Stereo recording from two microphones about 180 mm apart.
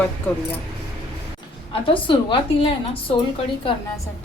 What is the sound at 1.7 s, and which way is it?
A woman's voice, 30° left (ahead or behind).